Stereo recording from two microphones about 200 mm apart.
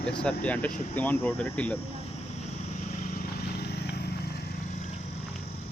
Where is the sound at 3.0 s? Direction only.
45° left (ahead or behind).